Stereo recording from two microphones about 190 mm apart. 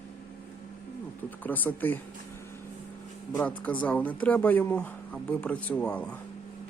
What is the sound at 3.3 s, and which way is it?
Speech, 10° left (ahead or behind).